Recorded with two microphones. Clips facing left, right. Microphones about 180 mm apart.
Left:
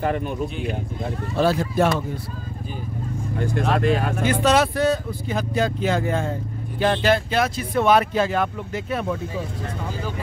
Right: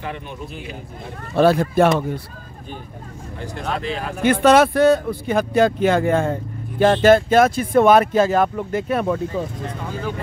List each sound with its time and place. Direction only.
1.3 s speech: 60° right (ahead or behind)
3.8 s speech: 50° left (ahead or behind)
4.2 s speech: 55° right (ahead or behind)